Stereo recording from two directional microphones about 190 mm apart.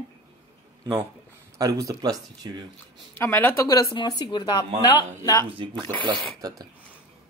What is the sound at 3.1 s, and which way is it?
Speech, 10° left (ahead or behind).